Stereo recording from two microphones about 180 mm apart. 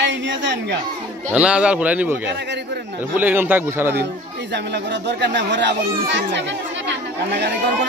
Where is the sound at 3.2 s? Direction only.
10° right (ahead or behind).